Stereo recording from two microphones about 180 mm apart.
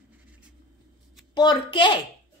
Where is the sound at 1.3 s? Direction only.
25° left (ahead or behind).